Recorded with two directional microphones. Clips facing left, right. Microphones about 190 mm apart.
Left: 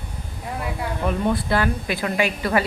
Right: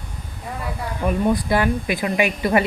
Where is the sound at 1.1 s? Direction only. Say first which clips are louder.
Right 3 dB; 15° right (ahead or behind).